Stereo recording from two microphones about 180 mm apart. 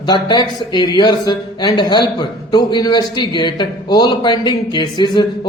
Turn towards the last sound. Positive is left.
turn(degrees=25)  # may be behind; listen again after turning